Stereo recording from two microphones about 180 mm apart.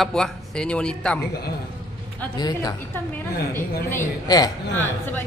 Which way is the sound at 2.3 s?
20° left (ahead or behind).